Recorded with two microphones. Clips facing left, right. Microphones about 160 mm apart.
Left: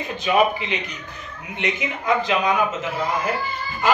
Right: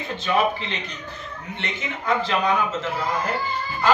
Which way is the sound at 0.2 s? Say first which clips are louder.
Left 3 dB; 15° left (ahead or behind).